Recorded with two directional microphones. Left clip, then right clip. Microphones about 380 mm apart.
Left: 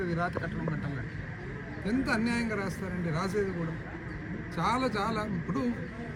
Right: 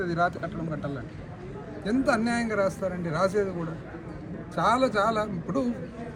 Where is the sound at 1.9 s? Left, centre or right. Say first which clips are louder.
Right 5 dB; centre.